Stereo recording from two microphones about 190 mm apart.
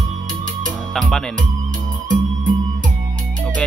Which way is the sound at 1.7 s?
45° right (ahead or behind).